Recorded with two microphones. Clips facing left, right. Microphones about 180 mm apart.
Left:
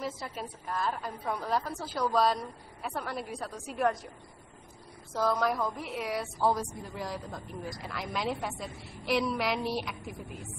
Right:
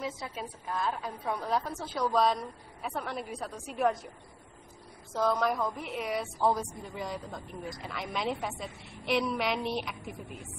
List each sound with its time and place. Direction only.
0.0 s a woman's voice: centre (ahead or behind)
5.1 s a woman's voice: centre (ahead or behind)